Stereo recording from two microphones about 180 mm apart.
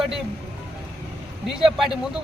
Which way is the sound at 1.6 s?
Centre (ahead or behind).